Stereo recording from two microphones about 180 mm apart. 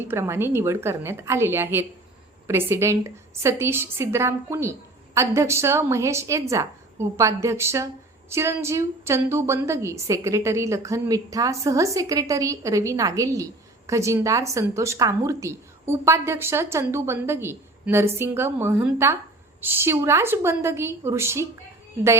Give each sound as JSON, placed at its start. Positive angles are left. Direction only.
{"t": 0.1, "sound": "a woman's voice", "side_deg": -15}